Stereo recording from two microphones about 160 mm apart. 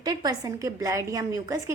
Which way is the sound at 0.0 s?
25° right (ahead or behind).